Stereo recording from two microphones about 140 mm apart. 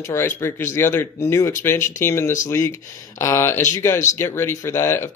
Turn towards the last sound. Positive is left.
turn(degrees=20)  # may be behind; listen again after turning